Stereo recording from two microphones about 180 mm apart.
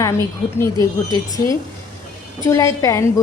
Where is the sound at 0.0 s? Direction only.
15° left (ahead or behind).